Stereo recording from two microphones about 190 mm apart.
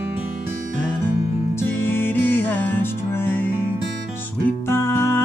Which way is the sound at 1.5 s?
10° left (ahead or behind).